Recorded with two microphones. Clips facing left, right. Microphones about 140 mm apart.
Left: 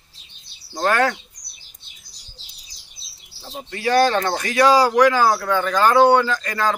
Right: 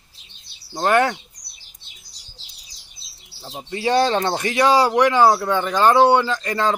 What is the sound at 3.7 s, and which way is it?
Speech, 25° right (ahead or behind).